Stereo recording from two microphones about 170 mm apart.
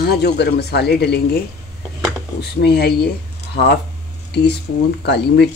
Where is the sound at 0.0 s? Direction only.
70° left (ahead or behind).